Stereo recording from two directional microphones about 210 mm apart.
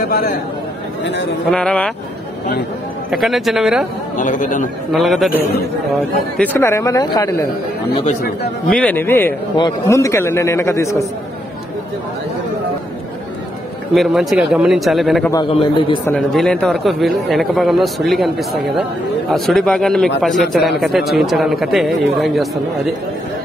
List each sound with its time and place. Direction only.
0.1 s a man's voice: 45° left (ahead or behind)
1.5 s a man's voice: 5° left (ahead or behind)
3.1 s a man's voice: centre (ahead or behind)
4.2 s a man's voice: 35° left (ahead or behind)
4.9 s a man's voice: centre (ahead or behind); by 7.4 s 15° left (ahead or behind)
8.6 s a man's voice: 5° left (ahead or behind)
13.9 s a man's voice: centre (ahead or behind)
15.3 s a man's voice: 25° left (ahead or behind)
16.1 s a man's voice: centre (ahead or behind)